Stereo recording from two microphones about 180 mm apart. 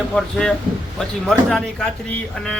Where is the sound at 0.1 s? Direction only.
5° left (ahead or behind).